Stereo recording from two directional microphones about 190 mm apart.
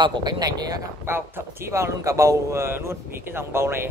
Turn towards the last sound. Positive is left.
turn(degrees=-10)  # may be behind; listen again after turning